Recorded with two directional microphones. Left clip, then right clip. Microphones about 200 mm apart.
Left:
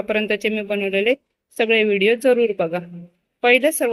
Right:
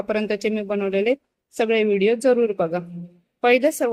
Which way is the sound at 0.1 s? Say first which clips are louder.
Left 3 dB; 10° right (ahead or behind).